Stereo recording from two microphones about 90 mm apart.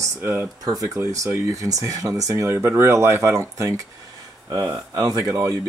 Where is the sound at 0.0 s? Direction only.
25° right (ahead or behind).